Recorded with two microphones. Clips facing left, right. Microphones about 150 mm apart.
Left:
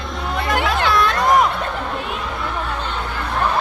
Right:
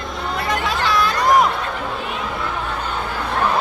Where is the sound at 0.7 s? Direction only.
Centre (ahead or behind).